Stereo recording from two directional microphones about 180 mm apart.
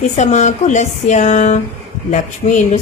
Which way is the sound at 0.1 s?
40° left (ahead or behind).